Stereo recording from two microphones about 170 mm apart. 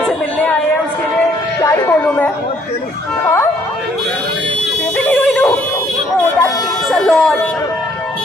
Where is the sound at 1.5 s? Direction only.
20° left (ahead or behind).